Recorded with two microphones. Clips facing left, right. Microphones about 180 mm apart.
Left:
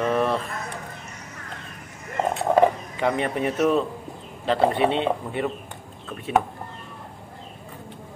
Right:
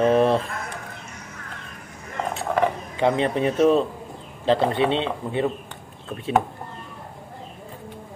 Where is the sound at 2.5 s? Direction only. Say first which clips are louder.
Left 5 dB; 25° left (ahead or behind).